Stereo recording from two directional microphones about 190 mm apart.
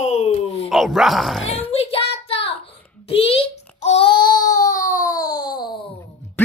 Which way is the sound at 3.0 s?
30° left (ahead or behind).